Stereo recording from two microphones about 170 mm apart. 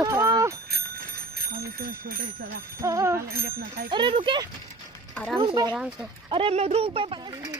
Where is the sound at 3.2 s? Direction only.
65° right (ahead or behind).